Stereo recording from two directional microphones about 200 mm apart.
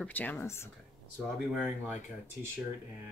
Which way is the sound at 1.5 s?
5° right (ahead or behind).